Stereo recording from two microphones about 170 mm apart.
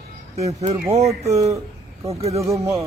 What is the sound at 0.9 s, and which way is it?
Speech, 15° right (ahead or behind).